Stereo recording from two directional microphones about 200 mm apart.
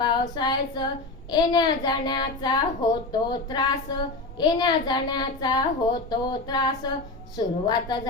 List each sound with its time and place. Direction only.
0.0 s a child's voice: 20° left (ahead or behind)